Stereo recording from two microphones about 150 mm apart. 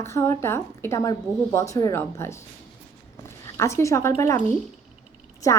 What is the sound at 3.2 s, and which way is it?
Zipper, 20° left (ahead or behind).